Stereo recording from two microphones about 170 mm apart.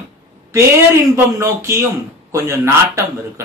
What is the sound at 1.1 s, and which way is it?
Speech, 15° right (ahead or behind).